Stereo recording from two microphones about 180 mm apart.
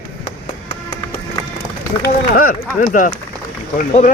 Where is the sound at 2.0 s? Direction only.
50° left (ahead or behind).